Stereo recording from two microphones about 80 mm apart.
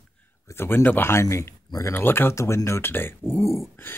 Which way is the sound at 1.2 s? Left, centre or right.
Left.